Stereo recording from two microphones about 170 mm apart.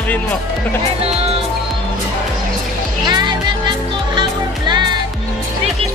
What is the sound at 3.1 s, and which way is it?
Music, 25° right (ahead or behind).